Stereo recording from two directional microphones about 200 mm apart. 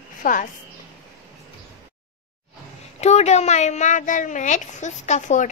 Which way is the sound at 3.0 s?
35° left (ahead or behind).